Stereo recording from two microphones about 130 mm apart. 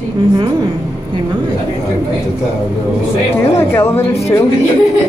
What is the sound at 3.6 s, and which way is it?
Speech, 20° left (ahead or behind).